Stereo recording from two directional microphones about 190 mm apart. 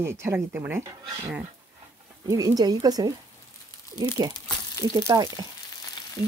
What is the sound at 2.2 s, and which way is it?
Speech, 20° right (ahead or behind).